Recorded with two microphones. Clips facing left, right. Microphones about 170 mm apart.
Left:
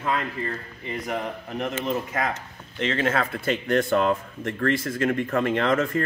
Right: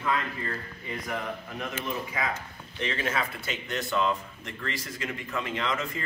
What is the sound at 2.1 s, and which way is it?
Speech, 60° left (ahead or behind).